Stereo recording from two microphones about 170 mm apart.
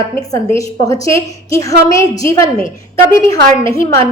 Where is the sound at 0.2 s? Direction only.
20° left (ahead or behind).